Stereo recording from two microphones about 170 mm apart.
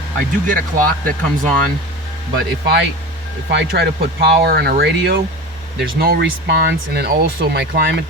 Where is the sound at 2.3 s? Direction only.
65° right (ahead or behind).